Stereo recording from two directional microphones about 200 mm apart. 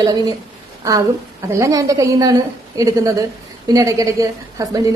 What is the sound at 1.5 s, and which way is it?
A woman's voice, 15° right (ahead or behind).